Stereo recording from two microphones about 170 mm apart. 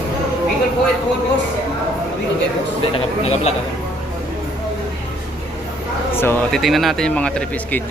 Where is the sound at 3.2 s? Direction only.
40° left (ahead or behind).